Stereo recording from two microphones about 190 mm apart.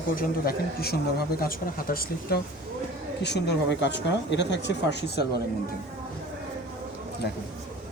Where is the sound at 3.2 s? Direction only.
60° left (ahead or behind).